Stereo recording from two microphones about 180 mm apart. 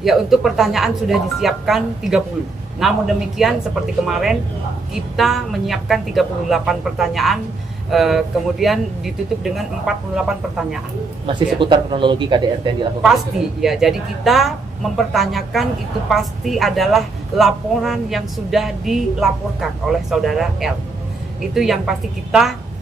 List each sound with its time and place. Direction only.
0.0 s a woman's voice: centre (ahead or behind)
11.2 s speech: 25° right (ahead or behind)
13.0 s a woman's voice: centre (ahead or behind)